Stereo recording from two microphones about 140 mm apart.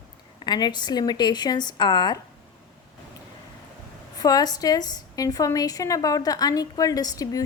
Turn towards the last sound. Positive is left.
turn(degrees=25)  # may be behind; listen again after turning